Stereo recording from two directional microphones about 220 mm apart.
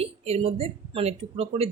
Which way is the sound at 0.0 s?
25° right (ahead or behind).